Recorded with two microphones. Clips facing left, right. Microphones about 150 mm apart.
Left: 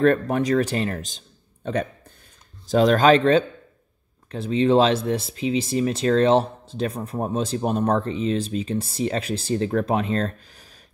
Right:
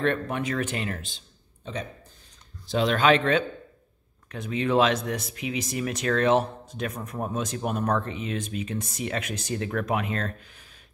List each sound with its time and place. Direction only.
0.0 s speech: 40° left (ahead or behind)
1.6 s a man's voice: 60° left (ahead or behind)
2.6 s speech: 45° left (ahead or behind)